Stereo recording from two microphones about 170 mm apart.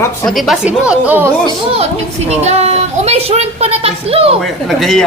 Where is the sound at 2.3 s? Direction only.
40° right (ahead or behind).